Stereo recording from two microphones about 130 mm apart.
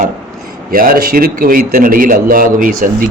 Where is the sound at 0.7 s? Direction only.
90° right.